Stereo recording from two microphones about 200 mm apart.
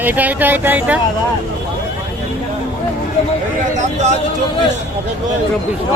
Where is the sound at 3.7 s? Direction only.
35° right (ahead or behind).